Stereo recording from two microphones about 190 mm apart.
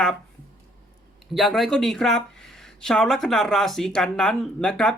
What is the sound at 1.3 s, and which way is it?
Speech, centre (ahead or behind).